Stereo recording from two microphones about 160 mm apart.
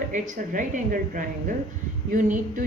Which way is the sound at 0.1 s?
55° right (ahead or behind).